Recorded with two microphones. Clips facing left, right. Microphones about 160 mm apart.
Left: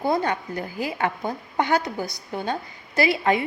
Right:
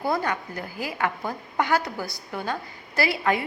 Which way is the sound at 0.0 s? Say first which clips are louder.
Left 3 dB; 20° left (ahead or behind).